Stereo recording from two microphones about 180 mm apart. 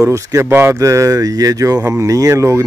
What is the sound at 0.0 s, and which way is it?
Speech, 15° right (ahead or behind).